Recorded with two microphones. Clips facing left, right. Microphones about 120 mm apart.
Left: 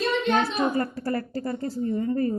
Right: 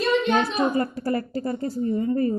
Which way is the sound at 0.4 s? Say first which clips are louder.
Right 2 dB; 20° right (ahead or behind).